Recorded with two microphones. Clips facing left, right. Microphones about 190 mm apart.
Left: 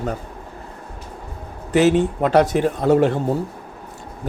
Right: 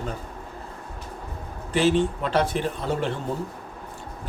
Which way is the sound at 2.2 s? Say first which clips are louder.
Left 8 dB; 45° left (ahead or behind).